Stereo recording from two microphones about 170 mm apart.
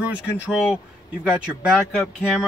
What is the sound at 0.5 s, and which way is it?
A man's voice, 5° right (ahead or behind).